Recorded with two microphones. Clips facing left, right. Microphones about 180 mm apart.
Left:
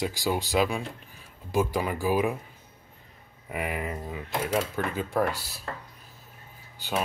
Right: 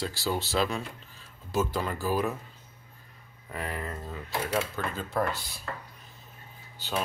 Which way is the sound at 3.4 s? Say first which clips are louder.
Left 4 dB; 15° left (ahead or behind).